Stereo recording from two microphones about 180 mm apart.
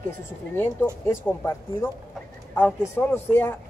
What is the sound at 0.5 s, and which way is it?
Speech, 15° left (ahead or behind).